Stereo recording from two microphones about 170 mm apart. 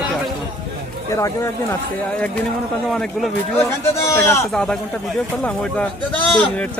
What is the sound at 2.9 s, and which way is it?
Speech, centre (ahead or behind).